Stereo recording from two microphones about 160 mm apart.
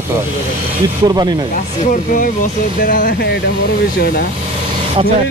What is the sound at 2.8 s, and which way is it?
Speech, 60° left (ahead or behind).